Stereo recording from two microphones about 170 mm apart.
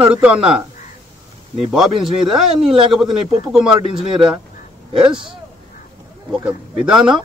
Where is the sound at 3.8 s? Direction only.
30° right (ahead or behind).